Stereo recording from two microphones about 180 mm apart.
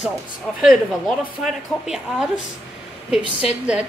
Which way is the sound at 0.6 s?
Centre (ahead or behind).